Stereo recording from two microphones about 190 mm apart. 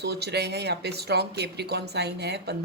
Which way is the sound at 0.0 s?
60° right (ahead or behind).